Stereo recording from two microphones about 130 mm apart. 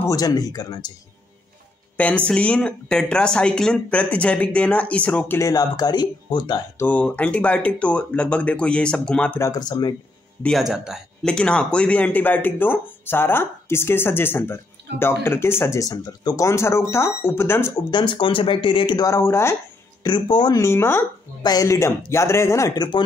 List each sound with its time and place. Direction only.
0.0 s speech: 30° left (ahead or behind)
2.0 s speech: 10° left (ahead or behind)
5.4 s speech: 30° left (ahead or behind)
6.8 s speech: 10° left (ahead or behind)
9.4 s speech: 30° left (ahead or behind)
10.4 s speech: centre (ahead or behind)
11.2 s speech: 5° left (ahead or behind)
17.9 s speech: 40° left (ahead or behind)
19.0 s speech: 20° left (ahead or behind)
20.0 s speech: 35° left (ahead or behind)
20.5 s speech: 20° left (ahead or behind)
21.4 s speech: 30° left (ahead or behind)